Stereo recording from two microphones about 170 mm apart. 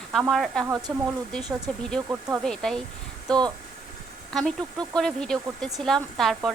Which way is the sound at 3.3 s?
25° right (ahead or behind).